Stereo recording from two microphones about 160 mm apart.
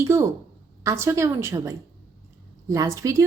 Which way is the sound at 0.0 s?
15° right (ahead or behind).